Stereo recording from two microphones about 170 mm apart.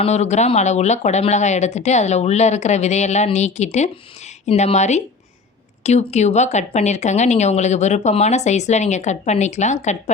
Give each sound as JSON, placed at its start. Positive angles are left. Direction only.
{"t": 0.0, "sound": "speech", "side_deg": 40}